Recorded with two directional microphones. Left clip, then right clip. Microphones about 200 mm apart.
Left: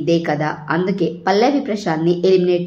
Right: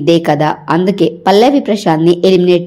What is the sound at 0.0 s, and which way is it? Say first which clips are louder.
A woman's voice: right 7 dB; 40° right (ahead or behind).